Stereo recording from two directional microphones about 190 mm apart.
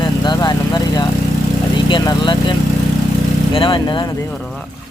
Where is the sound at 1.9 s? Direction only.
25° left (ahead or behind).